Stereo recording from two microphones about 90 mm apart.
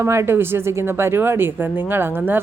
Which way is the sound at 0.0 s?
30° right (ahead or behind).